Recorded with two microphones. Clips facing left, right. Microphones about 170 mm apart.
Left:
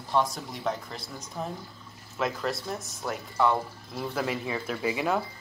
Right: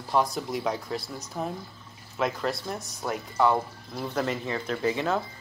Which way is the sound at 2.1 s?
Centre (ahead or behind).